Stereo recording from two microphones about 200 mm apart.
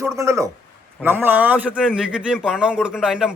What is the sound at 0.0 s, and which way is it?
A man's voice, 15° right (ahead or behind).